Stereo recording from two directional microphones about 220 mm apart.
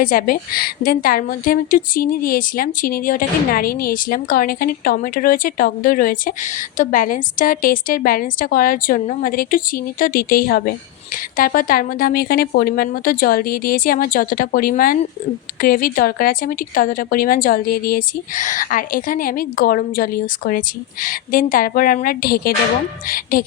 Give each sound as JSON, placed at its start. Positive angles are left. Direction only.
{"t": 0.0, "sound": "a woman's voice", "side_deg": 40}